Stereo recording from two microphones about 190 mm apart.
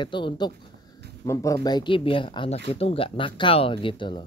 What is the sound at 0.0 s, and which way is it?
Speech, 25° left (ahead or behind).